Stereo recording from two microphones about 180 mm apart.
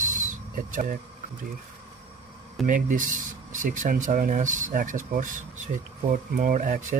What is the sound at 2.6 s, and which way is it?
Speech, 50° right (ahead or behind).